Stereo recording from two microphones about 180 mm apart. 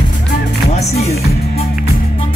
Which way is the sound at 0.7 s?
35° left (ahead or behind).